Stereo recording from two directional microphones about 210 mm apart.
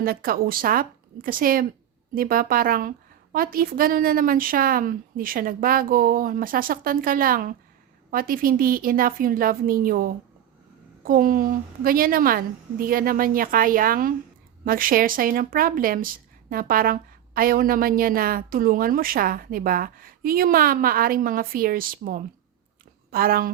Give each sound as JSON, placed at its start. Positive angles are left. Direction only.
{"t": 0.0, "sound": "speech", "side_deg": -45}